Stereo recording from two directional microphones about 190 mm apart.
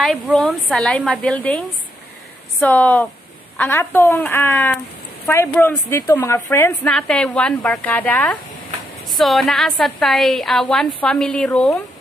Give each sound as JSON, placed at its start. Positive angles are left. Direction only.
{"t": 0.0, "sound": "a woman's voice", "side_deg": 0}
{"t": 2.6, "sound": "a woman's voice", "side_deg": 10}